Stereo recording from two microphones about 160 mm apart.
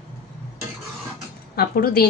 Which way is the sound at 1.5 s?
75° left (ahead or behind).